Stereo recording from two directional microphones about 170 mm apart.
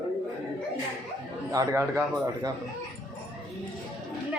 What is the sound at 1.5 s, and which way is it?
A man's voice, 15° right (ahead or behind).